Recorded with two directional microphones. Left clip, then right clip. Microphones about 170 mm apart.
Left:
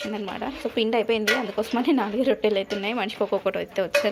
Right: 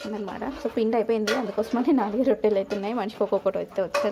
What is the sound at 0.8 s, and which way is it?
A woman's voice, 15° right (ahead or behind).